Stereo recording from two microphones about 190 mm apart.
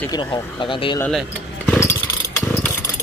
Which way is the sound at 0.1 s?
25° left (ahead or behind).